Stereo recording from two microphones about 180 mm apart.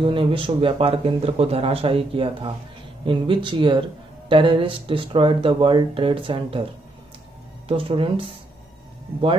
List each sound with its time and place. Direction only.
0.0 s speech: 30° right (ahead or behind)
7.6 s speech: 30° right (ahead or behind)